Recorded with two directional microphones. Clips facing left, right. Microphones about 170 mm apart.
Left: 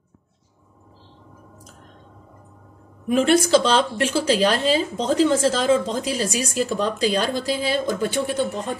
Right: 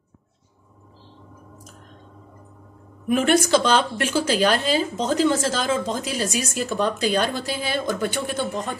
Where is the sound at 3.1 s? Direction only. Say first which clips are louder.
Left 2 dB; 30° left (ahead or behind).